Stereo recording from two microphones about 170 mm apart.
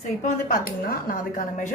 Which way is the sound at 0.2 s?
45° left (ahead or behind).